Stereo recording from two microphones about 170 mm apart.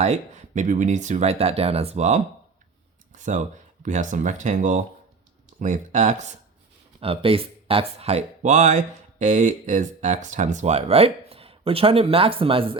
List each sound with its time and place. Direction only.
0.0 s speech: 40° right (ahead or behind)
3.1 s a sound: 45° right (ahead or behind)
3.8 s speech: 45° right (ahead or behind)